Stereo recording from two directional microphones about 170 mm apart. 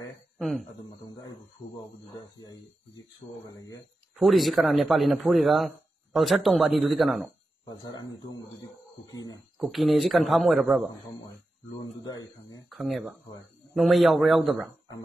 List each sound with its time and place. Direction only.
0.4 s speech: centre (ahead or behind)
3.4 s speech: 20° left (ahead or behind)
4.2 s a man's voice: centre (ahead or behind)
7.8 s speech: 20° left (ahead or behind)
9.6 s a man's voice: centre (ahead or behind)
12.6 s a man's voice: centre (ahead or behind)